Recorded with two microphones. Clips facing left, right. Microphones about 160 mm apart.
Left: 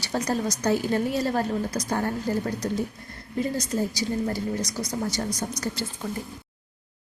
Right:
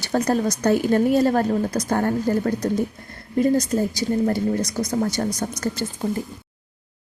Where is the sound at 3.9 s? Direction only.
55° right (ahead or behind).